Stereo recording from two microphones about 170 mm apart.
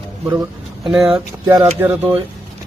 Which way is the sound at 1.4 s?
20° right (ahead or behind).